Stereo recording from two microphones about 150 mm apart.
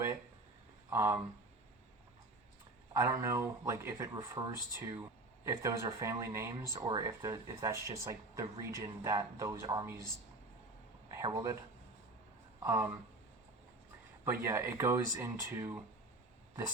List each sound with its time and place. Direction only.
0.9 s speech: 20° right (ahead or behind)
2.9 s speech: 20° right (ahead or behind)
6.7 s speech: 30° right (ahead or behind)
7.0 s speech: 20° right (ahead or behind)
11.1 s speech: 20° right (ahead or behind)
12.6 s speech: 20° right (ahead or behind)
14.3 s speech: 15° right (ahead or behind)